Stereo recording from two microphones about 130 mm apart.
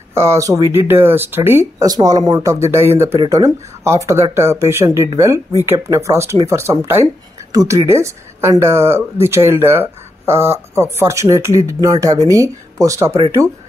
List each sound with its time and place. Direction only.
0.1 s speech: 20° right (ahead or behind)